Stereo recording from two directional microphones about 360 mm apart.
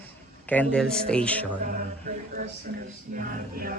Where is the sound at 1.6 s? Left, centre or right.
Right.